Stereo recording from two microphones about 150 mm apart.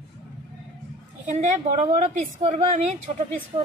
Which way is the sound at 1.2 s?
55° right (ahead or behind).